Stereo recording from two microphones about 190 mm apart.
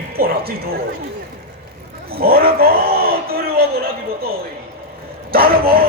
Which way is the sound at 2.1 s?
50° right (ahead or behind).